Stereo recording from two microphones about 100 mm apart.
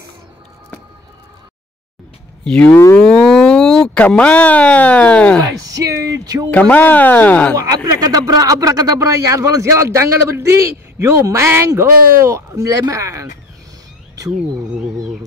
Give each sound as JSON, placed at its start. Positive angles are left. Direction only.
{"t": 2.4, "sound": "speech", "side_deg": 15}
{"t": 5.4, "sound": "speech", "side_deg": -35}
{"t": 6.5, "sound": "speech", "side_deg": 15}
{"t": 7.5, "sound": "speech", "side_deg": -40}